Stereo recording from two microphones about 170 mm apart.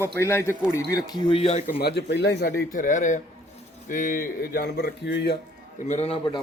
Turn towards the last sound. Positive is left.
turn(degrees=35)  # may be behind; listen again after turning